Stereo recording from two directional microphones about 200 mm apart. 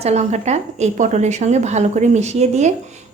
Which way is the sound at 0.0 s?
35° right (ahead or behind).